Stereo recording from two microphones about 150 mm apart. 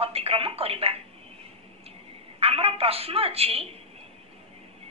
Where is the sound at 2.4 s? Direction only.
40° right (ahead or behind).